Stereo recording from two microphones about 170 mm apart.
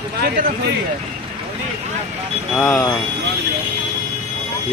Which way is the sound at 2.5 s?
Centre (ahead or behind).